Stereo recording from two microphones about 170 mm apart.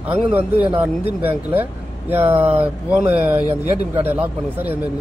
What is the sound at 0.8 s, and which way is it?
A man's voice, 10° right (ahead or behind).